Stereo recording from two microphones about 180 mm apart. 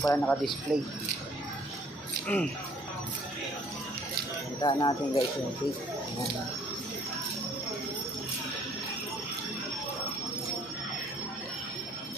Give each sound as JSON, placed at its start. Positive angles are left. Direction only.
{"t": 0.0, "sound": "speech", "side_deg": 15}
{"t": 2.3, "sound": "speech", "side_deg": 10}
{"t": 4.6, "sound": "speech", "side_deg": 25}